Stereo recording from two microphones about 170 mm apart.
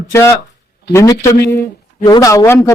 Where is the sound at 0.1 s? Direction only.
15° left (ahead or behind).